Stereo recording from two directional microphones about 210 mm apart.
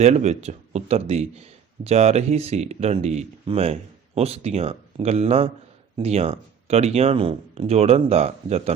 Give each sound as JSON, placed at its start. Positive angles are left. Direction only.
{"t": 0.0, "sound": "speech", "side_deg": -30}